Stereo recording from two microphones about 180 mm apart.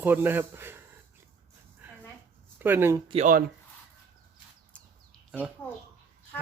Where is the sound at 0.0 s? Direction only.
10° right (ahead or behind).